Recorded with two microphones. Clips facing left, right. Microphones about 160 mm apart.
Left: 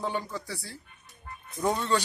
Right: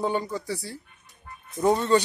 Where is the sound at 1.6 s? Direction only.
15° right (ahead or behind).